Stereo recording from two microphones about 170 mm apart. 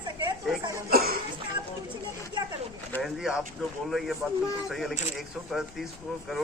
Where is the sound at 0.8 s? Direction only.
60° right (ahead or behind).